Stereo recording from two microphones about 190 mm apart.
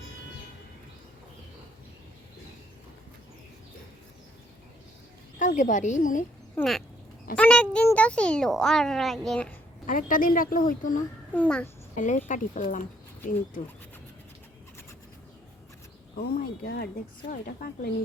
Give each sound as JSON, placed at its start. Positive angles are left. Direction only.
{"t": 5.4, "sound": "a woman's voice", "side_deg": 40}
{"t": 6.6, "sound": "a child's voice", "side_deg": 0}
{"t": 9.8, "sound": "speech", "side_deg": 45}
{"t": 11.3, "sound": "a child's voice", "side_deg": 5}
{"t": 11.9, "sound": "speech", "side_deg": 40}
{"t": 16.1, "sound": "speech", "side_deg": 50}